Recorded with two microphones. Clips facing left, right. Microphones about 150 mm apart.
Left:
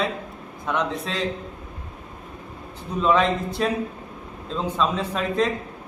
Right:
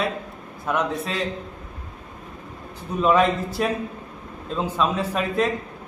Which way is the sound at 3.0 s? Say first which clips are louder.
Right 1 dB; 10° right (ahead or behind).